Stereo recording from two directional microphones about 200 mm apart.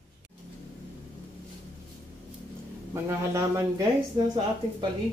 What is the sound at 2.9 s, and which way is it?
Speech, 15° right (ahead or behind).